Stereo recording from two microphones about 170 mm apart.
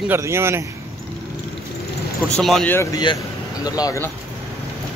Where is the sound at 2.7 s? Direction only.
20° left (ahead or behind).